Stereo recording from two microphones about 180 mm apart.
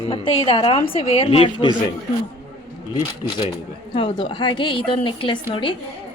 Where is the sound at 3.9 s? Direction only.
30° left (ahead or behind).